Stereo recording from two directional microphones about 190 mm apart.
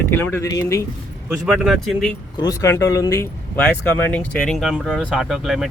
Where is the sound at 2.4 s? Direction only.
15° left (ahead or behind).